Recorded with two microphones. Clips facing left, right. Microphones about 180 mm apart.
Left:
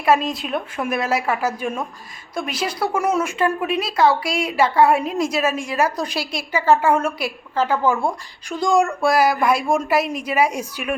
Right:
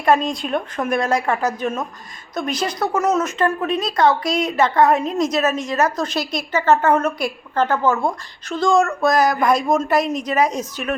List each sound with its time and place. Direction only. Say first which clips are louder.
0.0 s speech: right 1 dB; 5° left (ahead or behind)